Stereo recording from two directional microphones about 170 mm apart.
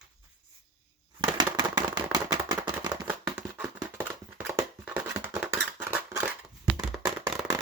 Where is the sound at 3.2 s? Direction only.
10° right (ahead or behind).